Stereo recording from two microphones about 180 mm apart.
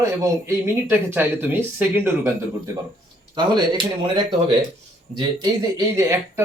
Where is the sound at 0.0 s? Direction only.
20° right (ahead or behind).